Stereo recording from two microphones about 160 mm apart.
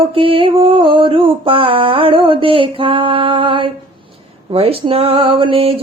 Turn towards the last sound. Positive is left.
turn(degrees=-35)  # may be behind; listen again after turning